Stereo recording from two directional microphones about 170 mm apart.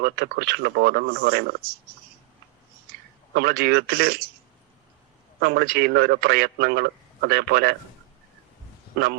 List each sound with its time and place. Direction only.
0.0 s speech: 65° right (ahead or behind)
3.3 s speech: 65° right (ahead or behind)
5.4 s a man's voice: 65° right (ahead or behind)